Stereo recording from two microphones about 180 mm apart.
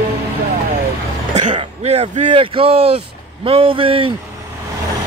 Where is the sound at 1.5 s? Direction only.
35° right (ahead or behind).